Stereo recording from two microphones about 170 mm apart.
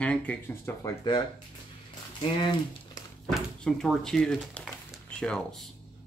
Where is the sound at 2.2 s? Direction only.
25° left (ahead or behind).